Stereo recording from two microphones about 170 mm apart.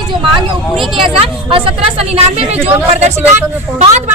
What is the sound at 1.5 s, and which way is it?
A woman's voice, 35° right (ahead or behind).